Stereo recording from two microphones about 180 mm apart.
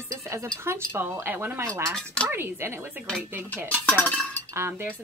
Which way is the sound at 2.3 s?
15° right (ahead or behind).